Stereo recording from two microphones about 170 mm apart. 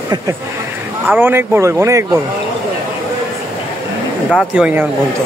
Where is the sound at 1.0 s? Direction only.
10° right (ahead or behind).